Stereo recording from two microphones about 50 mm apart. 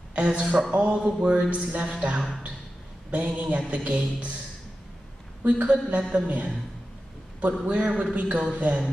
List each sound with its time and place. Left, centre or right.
0.1 s a woman's voice: centre
5.4 s a woman's voice: right
7.6 s a woman's voice: right